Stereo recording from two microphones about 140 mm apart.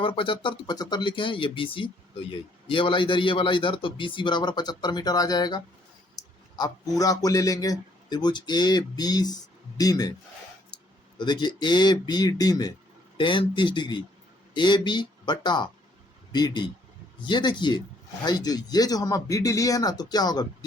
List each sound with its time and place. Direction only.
0.0 s a man's voice: 35° left (ahead or behind)
11.2 s a man's voice: 30° left (ahead or behind)